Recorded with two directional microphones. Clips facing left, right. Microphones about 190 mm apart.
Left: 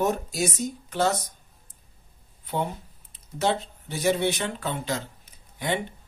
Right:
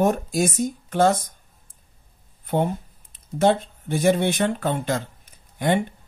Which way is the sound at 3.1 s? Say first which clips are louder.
Right 6 dB; 50° right (ahead or behind).